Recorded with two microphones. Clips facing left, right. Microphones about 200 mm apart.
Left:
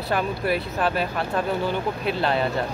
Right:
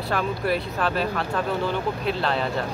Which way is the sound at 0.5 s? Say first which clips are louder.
Left 1 dB; 5° left (ahead or behind).